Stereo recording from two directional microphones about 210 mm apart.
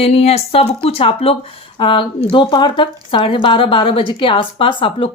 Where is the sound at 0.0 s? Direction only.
30° left (ahead or behind).